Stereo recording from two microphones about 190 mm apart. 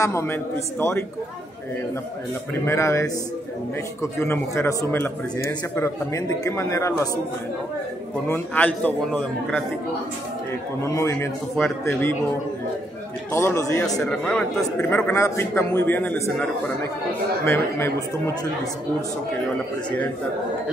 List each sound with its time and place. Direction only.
0.0 s a man's voice: 15° left (ahead or behind)
2.6 s a man's voice: 15° left (ahead or behind)
8.3 s a man's voice: 10° left (ahead or behind)
10.8 s a man's voice: 15° left (ahead or behind)
13.3 s a man's voice: 15° left (ahead or behind)
14.0 s a man's voice: 5° left (ahead or behind)